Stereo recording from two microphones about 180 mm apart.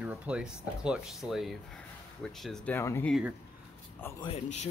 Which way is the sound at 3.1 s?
5° right (ahead or behind).